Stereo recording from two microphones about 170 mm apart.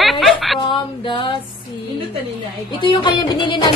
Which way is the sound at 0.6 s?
30° left (ahead or behind).